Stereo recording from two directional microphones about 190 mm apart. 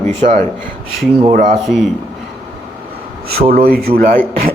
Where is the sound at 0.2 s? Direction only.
40° right (ahead or behind).